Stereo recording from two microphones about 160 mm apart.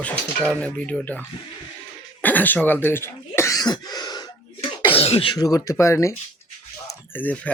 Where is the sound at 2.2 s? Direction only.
10° left (ahead or behind); by 4.3 s 25° left (ahead or behind).